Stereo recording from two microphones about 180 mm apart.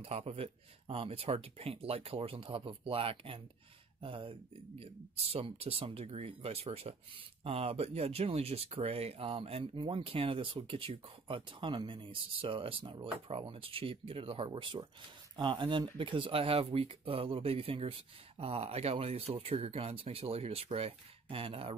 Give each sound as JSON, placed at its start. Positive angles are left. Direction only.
{"t": 0.0, "sound": "speech", "side_deg": -35}